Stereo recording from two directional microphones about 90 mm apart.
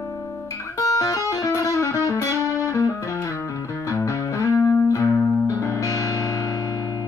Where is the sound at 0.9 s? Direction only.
40° left (ahead or behind).